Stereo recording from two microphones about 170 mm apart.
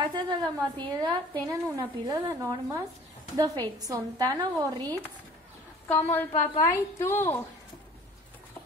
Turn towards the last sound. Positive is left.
turn(degrees=15)  # may be behind; listen again after turning